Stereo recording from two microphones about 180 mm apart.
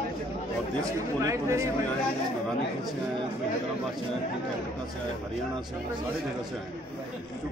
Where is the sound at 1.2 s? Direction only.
15° right (ahead or behind).